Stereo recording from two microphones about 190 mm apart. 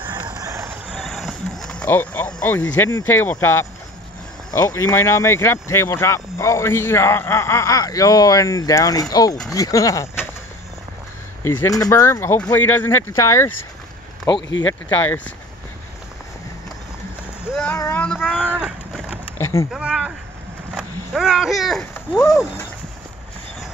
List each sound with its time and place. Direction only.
0.0 s music: 20° right (ahead or behind)
0.8 s speech: centre (ahead or behind); by 10.0 s 15° left (ahead or behind)
11.4 s speech: 15° left (ahead or behind)
14.5 s speech: 90° left
17.7 s speech: 15° left (ahead or behind)
18.0 s speech: centre (ahead or behind)
19.3 s vehicle: 15° left (ahead or behind)
19.7 s speech: 5° right (ahead or behind)